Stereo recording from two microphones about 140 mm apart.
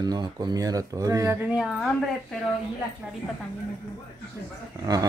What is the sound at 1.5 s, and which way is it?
Speech, 5° right (ahead or behind).